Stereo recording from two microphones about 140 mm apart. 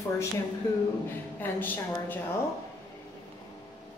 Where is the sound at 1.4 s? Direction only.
15° left (ahead or behind).